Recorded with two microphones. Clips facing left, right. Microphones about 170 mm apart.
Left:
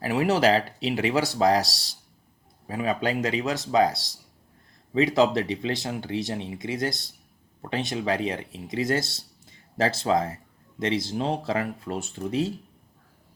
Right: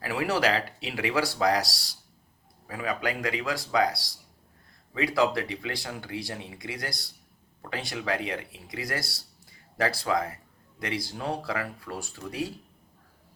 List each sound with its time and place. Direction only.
0.0 s speech: 20° left (ahead or behind)